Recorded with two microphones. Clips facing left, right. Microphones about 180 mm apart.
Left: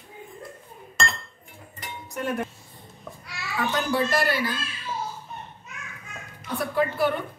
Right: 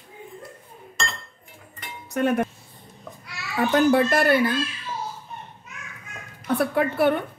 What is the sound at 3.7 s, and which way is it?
Speech, 55° right (ahead or behind).